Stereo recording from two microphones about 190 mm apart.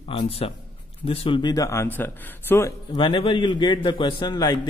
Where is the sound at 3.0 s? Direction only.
25° left (ahead or behind).